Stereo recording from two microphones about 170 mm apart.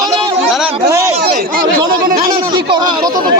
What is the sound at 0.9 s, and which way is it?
Speech, 20° right (ahead or behind).